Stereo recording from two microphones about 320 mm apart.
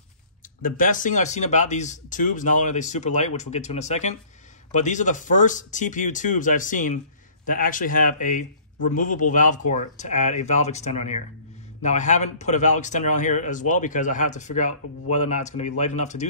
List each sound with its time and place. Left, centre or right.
0.6 s speech: left